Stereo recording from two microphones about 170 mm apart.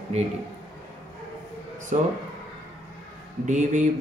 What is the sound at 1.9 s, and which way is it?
Speech, 45° right (ahead or behind).